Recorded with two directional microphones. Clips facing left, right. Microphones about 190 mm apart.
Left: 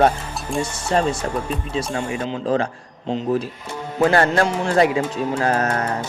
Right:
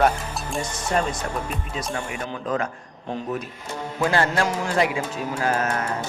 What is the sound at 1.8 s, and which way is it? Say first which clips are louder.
Speech: left 6 dB; 25° left (ahead or behind).